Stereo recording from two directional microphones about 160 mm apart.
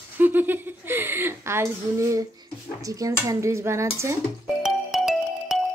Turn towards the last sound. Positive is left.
turn(degrees=0)  # may be behind; listen again after turning